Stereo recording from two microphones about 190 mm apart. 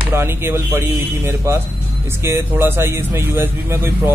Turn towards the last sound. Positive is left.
turn(degrees=-10)  # may be behind; listen again after turning